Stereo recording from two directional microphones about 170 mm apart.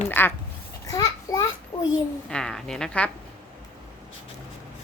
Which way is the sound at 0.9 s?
20° left (ahead or behind).